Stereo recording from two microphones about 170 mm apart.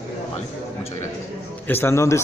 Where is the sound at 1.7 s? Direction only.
15° left (ahead or behind).